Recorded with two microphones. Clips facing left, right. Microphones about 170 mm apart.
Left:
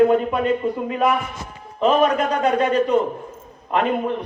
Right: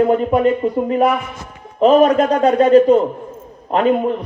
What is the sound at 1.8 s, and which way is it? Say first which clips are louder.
A man's voice: right 6 dB; 40° right (ahead or behind).